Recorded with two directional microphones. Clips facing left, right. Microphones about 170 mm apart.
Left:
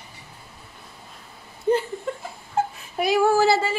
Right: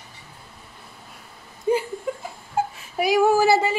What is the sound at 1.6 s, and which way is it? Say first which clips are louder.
Chuckle: even; 10° right (ahead or behind).